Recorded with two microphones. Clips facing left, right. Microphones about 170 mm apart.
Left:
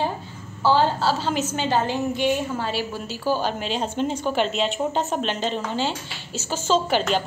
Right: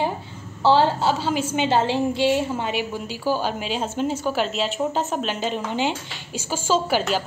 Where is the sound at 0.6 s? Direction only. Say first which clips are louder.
Right 2 dB; 25° right (ahead or behind).